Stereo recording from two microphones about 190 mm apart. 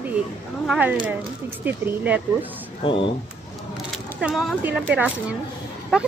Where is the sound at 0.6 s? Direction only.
5° right (ahead or behind).